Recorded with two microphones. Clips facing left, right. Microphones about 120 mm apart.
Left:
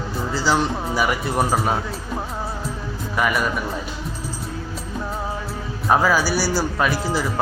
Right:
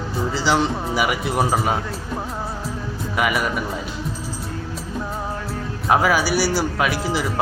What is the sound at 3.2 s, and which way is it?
Speech, 15° right (ahead or behind).